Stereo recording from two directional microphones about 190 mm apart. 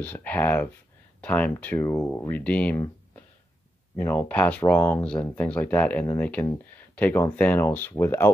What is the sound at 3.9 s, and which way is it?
Speech, 10° left (ahead or behind).